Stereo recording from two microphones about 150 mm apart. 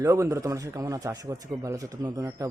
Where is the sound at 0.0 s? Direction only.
20° right (ahead or behind).